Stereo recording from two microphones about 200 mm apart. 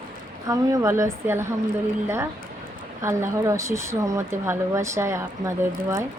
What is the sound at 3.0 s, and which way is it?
Speech, 15° right (ahead or behind).